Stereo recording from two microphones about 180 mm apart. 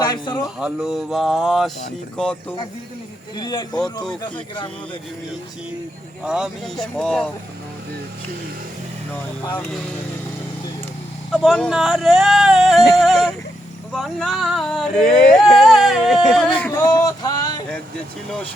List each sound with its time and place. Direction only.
0.0 s a man's voice: 20° left (ahead or behind)
0.6 s speech: 5° right (ahead or behind)
3.3 s speech: 25° left (ahead or behind)
6.2 s speech: 5° right (ahead or behind)
11.3 s speech: centre (ahead or behind)
16.8 s a sound: 20° left (ahead or behind)